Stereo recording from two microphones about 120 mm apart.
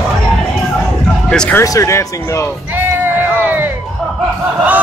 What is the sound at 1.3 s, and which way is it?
Music, 5° left (ahead or behind).